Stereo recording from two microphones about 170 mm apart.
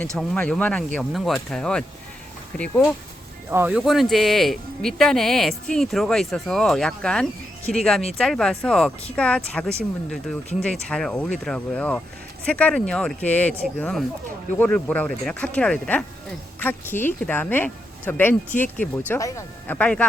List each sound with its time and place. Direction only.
0.2 s speech: 5° left (ahead or behind)
3.5 s speech: 10° right (ahead or behind); by 20.1 s 10° left (ahead or behind)